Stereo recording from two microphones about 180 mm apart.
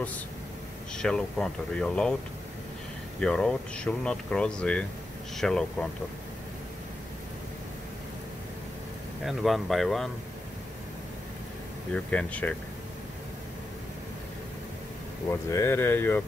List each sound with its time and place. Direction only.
0.9 s speech: 5° left (ahead or behind)
3.2 s speech: 5° left (ahead or behind)
9.2 s speech: centre (ahead or behind)
11.9 s speech: 5° left (ahead or behind)
15.2 s speech: 15° left (ahead or behind)